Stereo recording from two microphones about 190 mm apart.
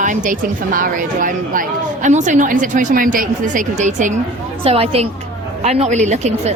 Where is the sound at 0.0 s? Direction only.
40° right (ahead or behind).